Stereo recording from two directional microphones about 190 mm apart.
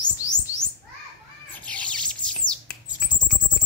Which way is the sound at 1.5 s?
5° left (ahead or behind).